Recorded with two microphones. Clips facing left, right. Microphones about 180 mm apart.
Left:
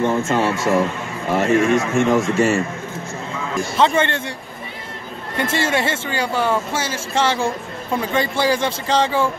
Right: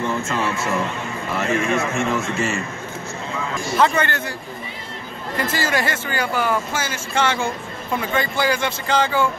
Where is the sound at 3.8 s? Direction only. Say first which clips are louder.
Left 2 dB; 25° left (ahead or behind).